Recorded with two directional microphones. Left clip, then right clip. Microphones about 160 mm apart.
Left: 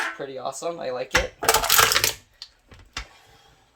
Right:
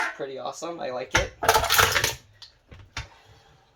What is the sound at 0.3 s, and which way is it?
Speech, 40° left (ahead or behind).